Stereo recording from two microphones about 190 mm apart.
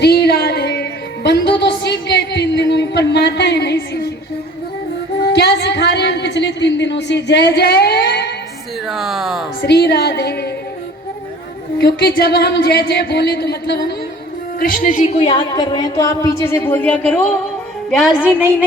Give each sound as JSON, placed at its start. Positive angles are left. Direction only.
{"t": 0.0, "sound": "music", "side_deg": 60}
{"t": 5.2, "sound": "a woman's voice", "side_deg": 60}
{"t": 8.9, "sound": "speech", "side_deg": 0}
{"t": 9.6, "sound": "speech", "side_deg": 60}
{"t": 11.8, "sound": "speech", "side_deg": 60}
{"t": 14.6, "sound": "a woman's voice", "side_deg": 45}